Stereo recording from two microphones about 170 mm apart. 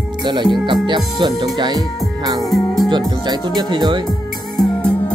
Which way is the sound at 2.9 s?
25° right (ahead or behind).